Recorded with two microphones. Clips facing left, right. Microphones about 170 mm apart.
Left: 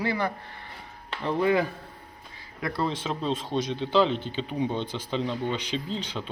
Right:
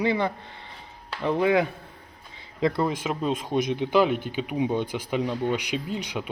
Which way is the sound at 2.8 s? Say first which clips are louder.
Right 2 dB; 10° right (ahead or behind).